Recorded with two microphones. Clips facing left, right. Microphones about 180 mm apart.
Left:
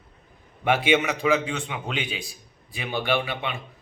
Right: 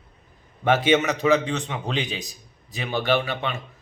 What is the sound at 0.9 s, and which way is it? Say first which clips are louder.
A man's voice: right 3 dB; 10° left (ahead or behind).